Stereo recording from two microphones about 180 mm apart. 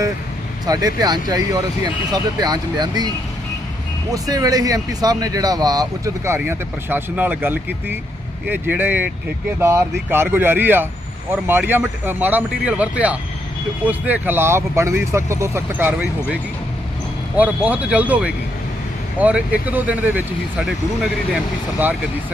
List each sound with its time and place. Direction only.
0.6 s speech: 20° right (ahead or behind)
4.1 s speech: 20° right (ahead or behind)